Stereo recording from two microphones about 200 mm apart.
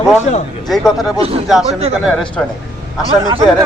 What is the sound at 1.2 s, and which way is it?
Speech, 30° right (ahead or behind).